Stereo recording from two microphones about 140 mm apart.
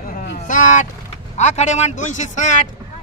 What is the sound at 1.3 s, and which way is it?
A man's voice, 55° left (ahead or behind).